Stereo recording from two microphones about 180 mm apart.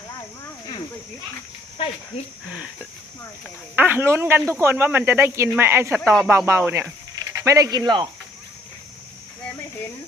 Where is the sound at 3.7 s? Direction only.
10° right (ahead or behind).